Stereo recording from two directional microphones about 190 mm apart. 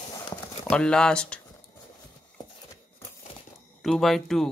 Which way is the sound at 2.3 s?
15° left (ahead or behind).